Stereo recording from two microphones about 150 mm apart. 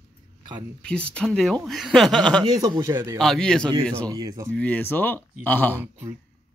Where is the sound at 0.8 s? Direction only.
5° left (ahead or behind).